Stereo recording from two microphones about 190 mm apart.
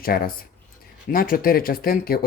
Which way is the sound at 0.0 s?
50° left (ahead or behind).